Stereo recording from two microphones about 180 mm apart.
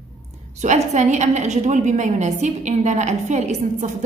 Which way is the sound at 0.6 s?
40° right (ahead or behind).